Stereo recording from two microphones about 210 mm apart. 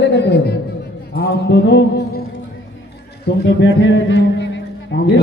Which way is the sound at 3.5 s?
65° left (ahead or behind).